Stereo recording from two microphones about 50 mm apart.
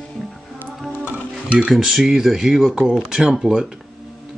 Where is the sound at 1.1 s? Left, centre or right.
Right.